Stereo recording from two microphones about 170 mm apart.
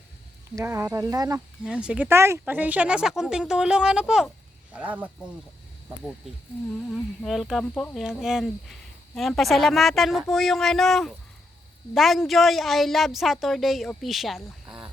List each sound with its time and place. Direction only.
0.5 s speech: 15° right (ahead or behind)
1.6 s speech: 5° right (ahead or behind)
6.9 s speech: centre (ahead or behind)